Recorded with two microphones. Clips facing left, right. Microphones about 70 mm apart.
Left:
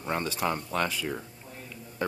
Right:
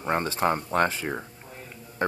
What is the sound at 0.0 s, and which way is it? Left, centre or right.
Speech, right.